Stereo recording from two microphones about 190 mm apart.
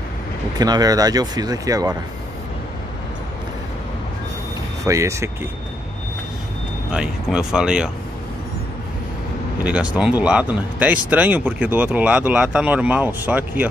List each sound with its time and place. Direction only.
0.6 s speech: 20° right (ahead or behind)
4.8 s speech: 15° right (ahead or behind)
6.9 s speech: 5° right (ahead or behind)
9.6 s speech: 5° right (ahead or behind)